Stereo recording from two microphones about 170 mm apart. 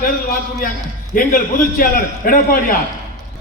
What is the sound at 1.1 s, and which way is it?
A man's voice, 50° left (ahead or behind).